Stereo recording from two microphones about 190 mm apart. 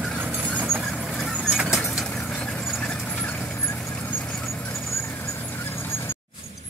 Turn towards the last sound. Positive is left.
turn(degrees=10)  # may be behind; listen again after turning